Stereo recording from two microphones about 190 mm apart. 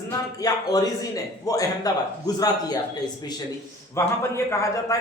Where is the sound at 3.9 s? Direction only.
15° left (ahead or behind).